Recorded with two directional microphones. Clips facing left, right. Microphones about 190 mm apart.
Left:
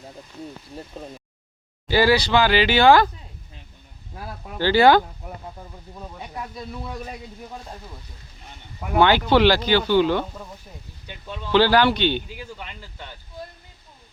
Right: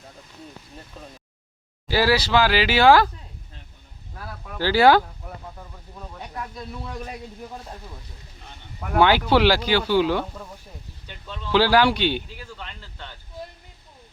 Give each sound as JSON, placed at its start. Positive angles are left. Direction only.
{"t": 1.9, "sound": "speech", "side_deg": 0}
{"t": 4.1, "sound": "speech", "side_deg": 20}
{"t": 4.6, "sound": "speech", "side_deg": -5}
{"t": 5.2, "sound": "speech", "side_deg": 10}
{"t": 9.0, "sound": "speech", "side_deg": -5}
{"t": 11.0, "sound": "speech", "side_deg": 15}
{"t": 11.5, "sound": "speech", "side_deg": -5}
{"t": 12.4, "sound": "speech", "side_deg": 10}